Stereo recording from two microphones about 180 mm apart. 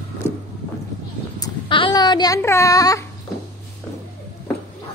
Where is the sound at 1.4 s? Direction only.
25° left (ahead or behind).